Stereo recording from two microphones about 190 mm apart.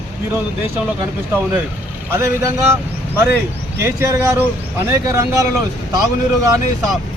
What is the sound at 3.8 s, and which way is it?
Speech, 15° right (ahead or behind).